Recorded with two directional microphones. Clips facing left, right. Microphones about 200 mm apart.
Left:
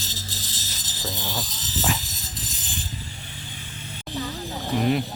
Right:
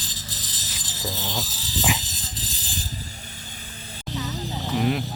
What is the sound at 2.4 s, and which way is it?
Music, 35° right (ahead or behind).